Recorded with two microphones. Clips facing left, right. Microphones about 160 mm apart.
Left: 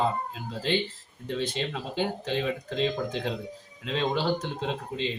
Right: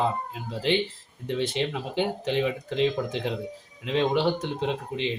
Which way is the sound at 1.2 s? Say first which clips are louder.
Right 3 dB; 20° right (ahead or behind).